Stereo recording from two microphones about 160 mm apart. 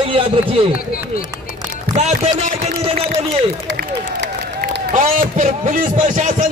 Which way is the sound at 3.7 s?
90° right.